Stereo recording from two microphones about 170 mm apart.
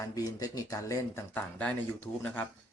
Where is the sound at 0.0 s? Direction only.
20° left (ahead or behind).